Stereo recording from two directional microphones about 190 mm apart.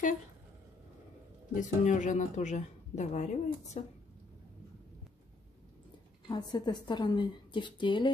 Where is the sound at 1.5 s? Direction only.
40° left (ahead or behind).